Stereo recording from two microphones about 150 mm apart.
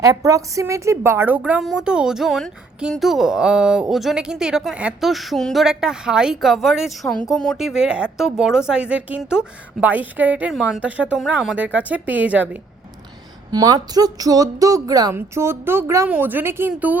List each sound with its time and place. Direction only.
0.0 s a woman's voice: 25° right (ahead or behind)
13.5 s speech: 25° right (ahead or behind)